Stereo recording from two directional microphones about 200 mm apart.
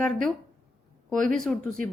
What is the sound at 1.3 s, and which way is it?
Speech, centre (ahead or behind).